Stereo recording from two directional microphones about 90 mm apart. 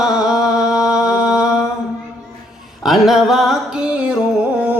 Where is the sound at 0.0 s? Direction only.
5° right (ahead or behind).